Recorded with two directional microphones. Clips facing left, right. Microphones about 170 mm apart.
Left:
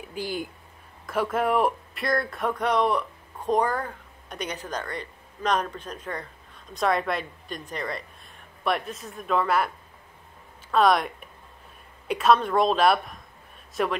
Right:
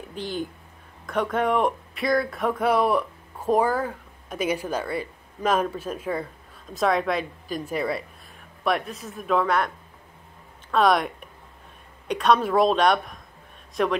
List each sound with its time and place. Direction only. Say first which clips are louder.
0.1 s speech: right 1 dB; 10° left (ahead or behind)
10.7 s speech: even; centre (ahead or behind)